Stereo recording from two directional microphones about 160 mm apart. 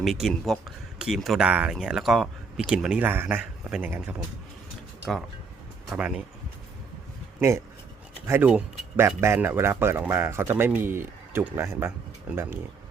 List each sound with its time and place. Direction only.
0.0 s speech: centre (ahead or behind)
5.1 s speech: centre (ahead or behind)
7.3 s speech: 15° right (ahead or behind)